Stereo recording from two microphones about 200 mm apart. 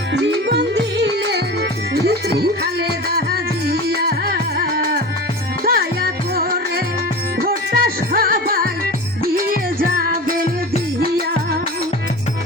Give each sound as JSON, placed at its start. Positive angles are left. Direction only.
{"t": 0.1, "sound": "music", "side_deg": -60}
{"t": 3.7, "sound": "music", "side_deg": -50}